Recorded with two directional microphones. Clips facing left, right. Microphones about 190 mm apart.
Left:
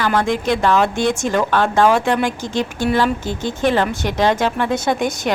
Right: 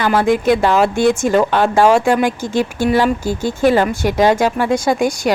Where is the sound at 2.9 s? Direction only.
10° right (ahead or behind).